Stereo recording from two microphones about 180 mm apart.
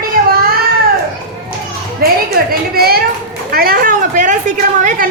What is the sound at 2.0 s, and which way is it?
A woman's voice, 55° right (ahead or behind).